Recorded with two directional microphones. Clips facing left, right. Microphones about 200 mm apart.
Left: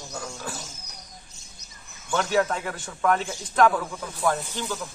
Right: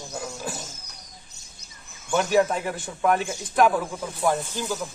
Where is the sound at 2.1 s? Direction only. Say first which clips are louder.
Right 3 dB; 15° right (ahead or behind).